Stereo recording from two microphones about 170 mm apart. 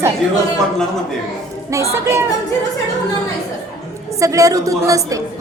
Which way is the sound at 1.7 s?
15° right (ahead or behind).